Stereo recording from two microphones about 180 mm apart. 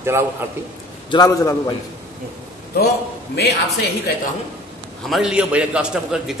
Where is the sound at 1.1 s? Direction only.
20° left (ahead or behind).